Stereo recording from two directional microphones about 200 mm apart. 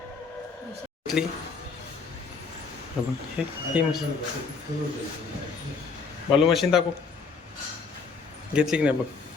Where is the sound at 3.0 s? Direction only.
5° right (ahead or behind).